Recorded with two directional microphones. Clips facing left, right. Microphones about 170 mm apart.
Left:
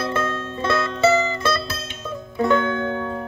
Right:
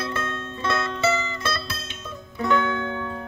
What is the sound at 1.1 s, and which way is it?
Mandolin, 40° left (ahead or behind).